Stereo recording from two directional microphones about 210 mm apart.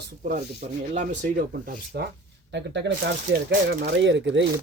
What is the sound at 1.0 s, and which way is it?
Speech, 40° right (ahead or behind).